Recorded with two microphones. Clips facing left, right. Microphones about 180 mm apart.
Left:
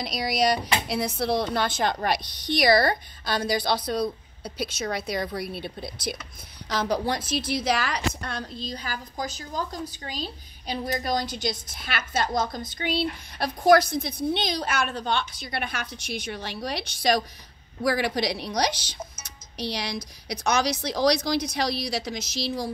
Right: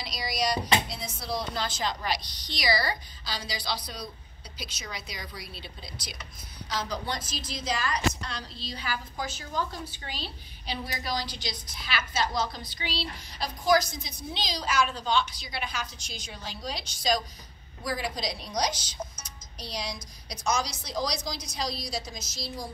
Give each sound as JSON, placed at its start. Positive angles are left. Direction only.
{"t": 0.0, "sound": "a woman's voice", "side_deg": 55}
{"t": 19.2, "sound": "music", "side_deg": 70}
{"t": 20.2, "sound": "a woman's voice", "side_deg": 70}